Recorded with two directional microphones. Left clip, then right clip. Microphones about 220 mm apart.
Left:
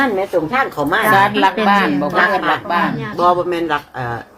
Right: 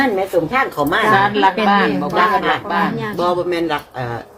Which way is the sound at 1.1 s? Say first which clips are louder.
Left 2 dB; 55° left (ahead or behind).